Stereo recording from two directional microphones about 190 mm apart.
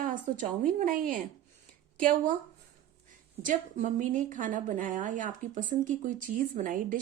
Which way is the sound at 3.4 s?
45° right (ahead or behind).